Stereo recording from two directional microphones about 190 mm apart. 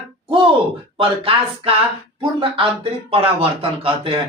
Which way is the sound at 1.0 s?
30° right (ahead or behind).